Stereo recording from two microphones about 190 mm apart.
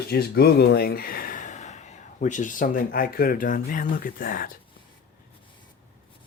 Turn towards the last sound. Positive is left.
turn(degrees=45)  # may be behind; listen again after turning